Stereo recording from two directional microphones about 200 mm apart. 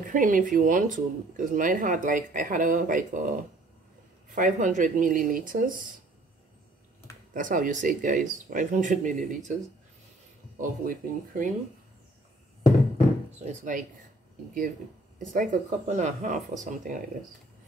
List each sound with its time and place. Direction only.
0.0 s speech: 40° right (ahead or behind)
4.4 s speech: 40° right (ahead or behind)
7.3 s speech: 40° right (ahead or behind)
10.6 s speech: 45° right (ahead or behind)
12.9 s a sound: 35° right (ahead or behind)
15.1 s speech: 40° right (ahead or behind)